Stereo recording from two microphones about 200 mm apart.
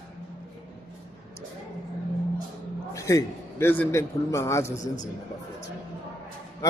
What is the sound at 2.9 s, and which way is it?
A man's voice, 15° left (ahead or behind).